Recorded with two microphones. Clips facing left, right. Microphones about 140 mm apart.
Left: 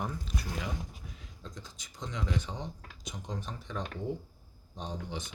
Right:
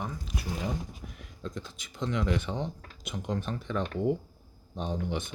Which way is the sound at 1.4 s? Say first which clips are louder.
Right 10 dB; 60° right (ahead or behind).